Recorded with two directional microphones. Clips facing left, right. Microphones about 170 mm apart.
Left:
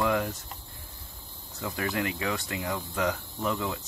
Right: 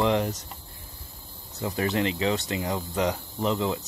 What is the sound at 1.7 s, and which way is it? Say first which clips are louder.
Speech: right 5 dB; 25° right (ahead or behind).